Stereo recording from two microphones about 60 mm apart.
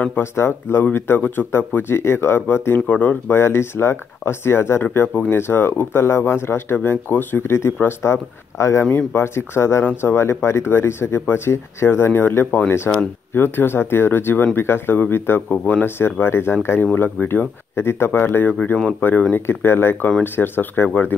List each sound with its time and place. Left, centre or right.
0.2 s speech: left
3.3 s speech: left